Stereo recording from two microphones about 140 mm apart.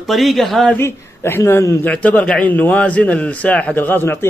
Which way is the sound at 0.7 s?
15° left (ahead or behind).